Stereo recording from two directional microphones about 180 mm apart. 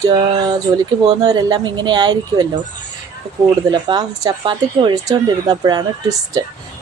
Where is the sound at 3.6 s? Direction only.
25° right (ahead or behind).